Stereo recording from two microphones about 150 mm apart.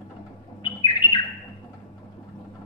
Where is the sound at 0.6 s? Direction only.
30° left (ahead or behind).